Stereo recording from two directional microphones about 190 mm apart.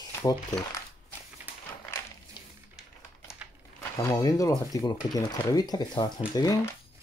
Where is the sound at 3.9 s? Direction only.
15° left (ahead or behind).